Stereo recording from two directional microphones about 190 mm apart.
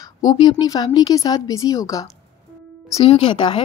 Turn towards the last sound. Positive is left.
turn(degrees=25)  # may be behind; listen again after turning